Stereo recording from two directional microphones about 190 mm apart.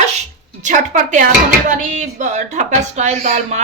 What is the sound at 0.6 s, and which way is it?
Speech, 40° right (ahead or behind).